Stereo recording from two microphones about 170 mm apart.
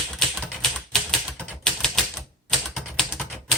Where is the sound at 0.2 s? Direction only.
Centre (ahead or behind).